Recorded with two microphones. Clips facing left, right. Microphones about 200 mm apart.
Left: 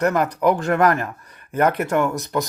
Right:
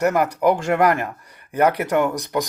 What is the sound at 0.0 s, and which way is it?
Speech, 10° right (ahead or behind).